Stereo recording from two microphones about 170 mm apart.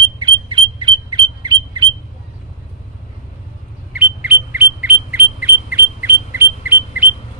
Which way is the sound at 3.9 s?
10° right (ahead or behind).